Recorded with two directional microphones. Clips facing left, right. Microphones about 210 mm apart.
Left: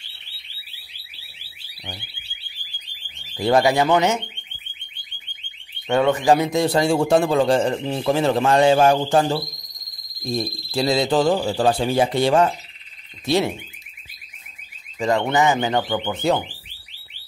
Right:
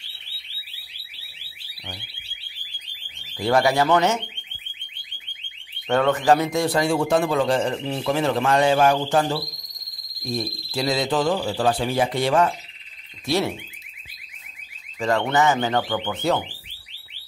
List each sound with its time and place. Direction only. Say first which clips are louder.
3.4 s speech: left 2 dB; 20° left (ahead or behind)
5.9 s a man's voice: left 1 dB; 10° left (ahead or behind)
15.0 s speech: left 2 dB; 15° left (ahead or behind)